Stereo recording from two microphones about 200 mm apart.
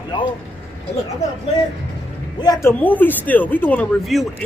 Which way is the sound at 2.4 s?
15° left (ahead or behind).